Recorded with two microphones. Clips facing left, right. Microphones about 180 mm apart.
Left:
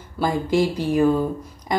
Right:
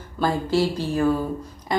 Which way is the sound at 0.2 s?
15° left (ahead or behind).